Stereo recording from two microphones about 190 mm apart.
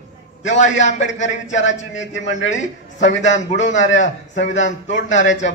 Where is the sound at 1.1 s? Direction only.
40° left (ahead or behind).